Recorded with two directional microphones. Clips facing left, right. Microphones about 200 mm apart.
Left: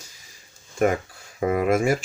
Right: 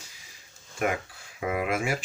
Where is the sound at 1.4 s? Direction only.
40° left (ahead or behind).